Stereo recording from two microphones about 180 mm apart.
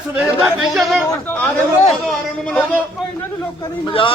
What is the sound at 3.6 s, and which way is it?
Speech, 30° left (ahead or behind).